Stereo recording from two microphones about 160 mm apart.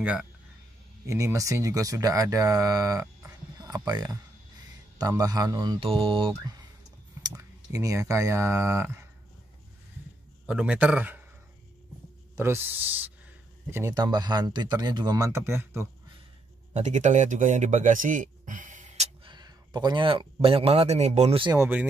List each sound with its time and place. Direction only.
0.0 s a man's voice: 10° right (ahead or behind)
1.0 s speech: 20° right (ahead or behind)
7.2 s speech: 20° right (ahead or behind)
10.4 s a man's voice: 10° right (ahead or behind)
12.4 s a man's voice: 15° right (ahead or behind)
16.7 s speech: 45° right (ahead or behind)
19.2 s speech: 25° right (ahead or behind); by 21.4 s 45° right (ahead or behind)
21.5 s a man's voice: 10° right (ahead or behind)